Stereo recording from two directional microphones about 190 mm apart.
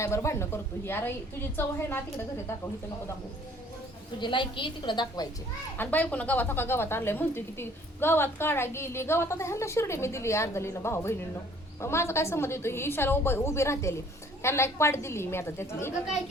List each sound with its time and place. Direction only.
0.0 s speech: 15° left (ahead or behind)
4.2 s a woman's voice: 25° left (ahead or behind)
5.7 s speech: 10° left (ahead or behind)